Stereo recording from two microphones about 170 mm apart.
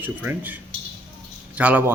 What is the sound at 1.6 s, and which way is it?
Speech, 10° right (ahead or behind).